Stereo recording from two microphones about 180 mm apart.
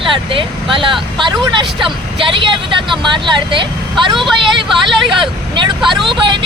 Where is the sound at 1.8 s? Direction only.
30° right (ahead or behind).